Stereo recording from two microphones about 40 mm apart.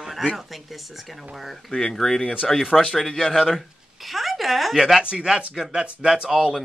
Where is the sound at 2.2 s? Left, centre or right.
Left.